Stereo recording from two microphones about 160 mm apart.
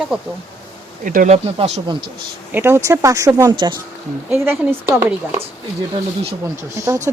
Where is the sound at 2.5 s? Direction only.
15° right (ahead or behind).